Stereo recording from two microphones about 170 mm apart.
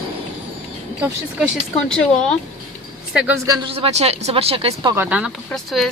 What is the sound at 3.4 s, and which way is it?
Speech, 20° right (ahead or behind).